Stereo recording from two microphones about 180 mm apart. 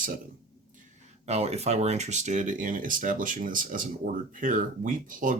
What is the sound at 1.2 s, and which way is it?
Speech, 35° right (ahead or behind).